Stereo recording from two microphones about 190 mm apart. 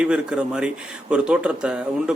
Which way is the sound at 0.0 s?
5° right (ahead or behind).